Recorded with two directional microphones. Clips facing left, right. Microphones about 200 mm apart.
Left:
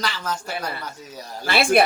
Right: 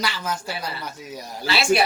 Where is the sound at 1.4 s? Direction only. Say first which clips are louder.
Left 1 dB; 55° left (ahead or behind).